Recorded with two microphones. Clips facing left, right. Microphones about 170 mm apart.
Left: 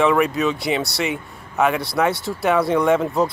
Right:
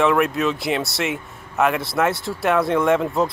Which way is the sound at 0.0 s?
Centre (ahead or behind).